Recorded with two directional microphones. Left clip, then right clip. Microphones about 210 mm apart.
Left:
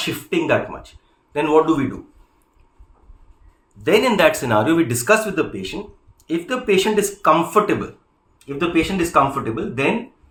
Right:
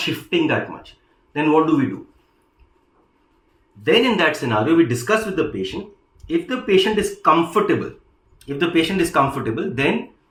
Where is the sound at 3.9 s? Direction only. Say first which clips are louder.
Left 1 dB; 55° left (ahead or behind).